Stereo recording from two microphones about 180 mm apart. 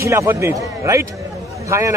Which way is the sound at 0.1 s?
15° right (ahead or behind).